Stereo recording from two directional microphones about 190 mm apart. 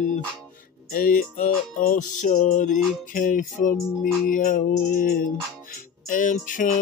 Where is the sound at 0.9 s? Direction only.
45° left (ahead or behind).